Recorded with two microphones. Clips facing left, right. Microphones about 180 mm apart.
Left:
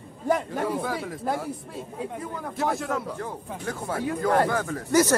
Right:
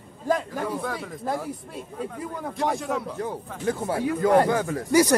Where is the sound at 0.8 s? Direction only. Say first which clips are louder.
Left 1 dB; 5° left (ahead or behind).